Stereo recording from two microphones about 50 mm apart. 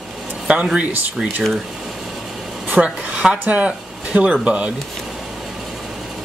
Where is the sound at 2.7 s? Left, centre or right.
Right.